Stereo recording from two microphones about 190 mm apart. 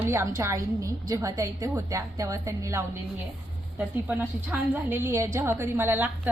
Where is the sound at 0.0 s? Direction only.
15° right (ahead or behind).